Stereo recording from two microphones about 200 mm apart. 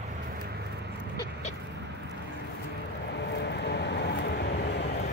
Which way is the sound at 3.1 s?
60° left (ahead or behind).